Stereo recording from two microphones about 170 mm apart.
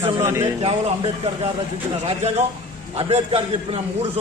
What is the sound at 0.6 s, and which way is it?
A man's voice, 35° right (ahead or behind).